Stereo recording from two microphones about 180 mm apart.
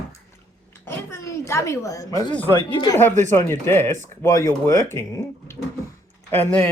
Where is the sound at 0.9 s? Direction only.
15° left (ahead or behind).